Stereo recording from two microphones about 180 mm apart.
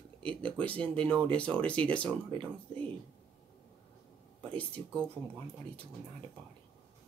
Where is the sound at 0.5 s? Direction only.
5° left (ahead or behind).